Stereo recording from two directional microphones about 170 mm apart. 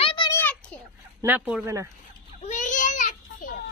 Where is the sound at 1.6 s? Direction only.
15° right (ahead or behind).